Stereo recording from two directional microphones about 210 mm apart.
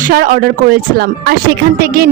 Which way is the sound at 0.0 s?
40° right (ahead or behind).